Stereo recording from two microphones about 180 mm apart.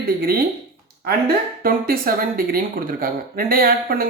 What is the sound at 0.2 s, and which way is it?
Speech, 55° right (ahead or behind).